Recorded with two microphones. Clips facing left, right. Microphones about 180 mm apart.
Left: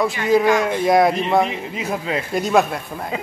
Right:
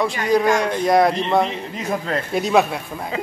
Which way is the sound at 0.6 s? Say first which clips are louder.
Left 1 dB; 5° left (ahead or behind).